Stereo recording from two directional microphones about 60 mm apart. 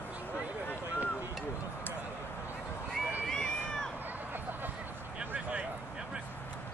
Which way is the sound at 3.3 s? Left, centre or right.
Centre.